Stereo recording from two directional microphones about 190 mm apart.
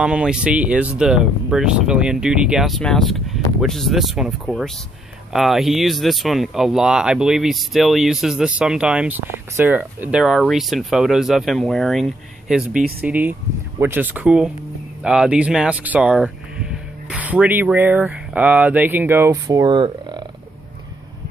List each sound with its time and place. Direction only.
0.0 s speech: 5° right (ahead or behind); by 20.2 s 25° right (ahead or behind)